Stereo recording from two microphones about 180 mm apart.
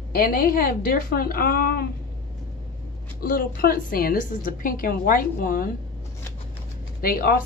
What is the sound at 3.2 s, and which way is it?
A woman's voice, 55° left (ahead or behind).